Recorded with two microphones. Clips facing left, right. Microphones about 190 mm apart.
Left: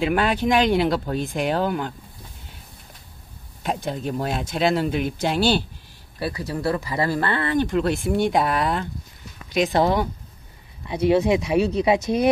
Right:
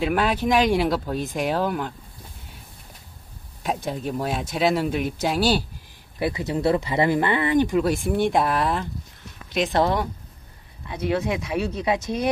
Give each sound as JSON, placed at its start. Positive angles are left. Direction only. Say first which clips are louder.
{"t": 0.0, "sound": "speech", "louder": "left 1 dB", "side_deg": 0}
{"t": 3.6, "sound": "speech", "louder": "left 1 dB", "side_deg": 0}
{"t": 6.1, "sound": "speech", "louder": "right 3 dB", "side_deg": -20}
{"t": 7.8, "sound": "speech", "louder": "even", "side_deg": -5}
{"t": 10.9, "sound": "speech", "louder": "left 6 dB", "side_deg": 20}